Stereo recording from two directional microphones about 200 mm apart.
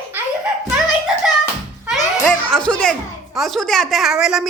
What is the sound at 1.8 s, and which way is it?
Music, 5° right (ahead or behind).